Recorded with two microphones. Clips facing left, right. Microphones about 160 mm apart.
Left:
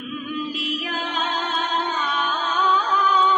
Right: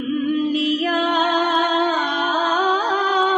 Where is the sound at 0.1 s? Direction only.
65° right (ahead or behind).